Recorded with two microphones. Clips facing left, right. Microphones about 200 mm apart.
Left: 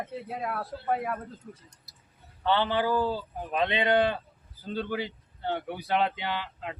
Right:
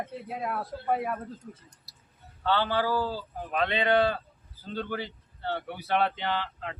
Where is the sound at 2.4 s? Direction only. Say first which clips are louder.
Left 1 dB; 20° left (ahead or behind).